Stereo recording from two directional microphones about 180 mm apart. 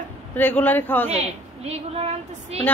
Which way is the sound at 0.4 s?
10° left (ahead or behind).